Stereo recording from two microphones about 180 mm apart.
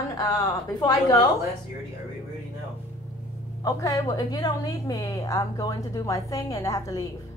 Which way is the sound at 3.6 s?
20° left (ahead or behind).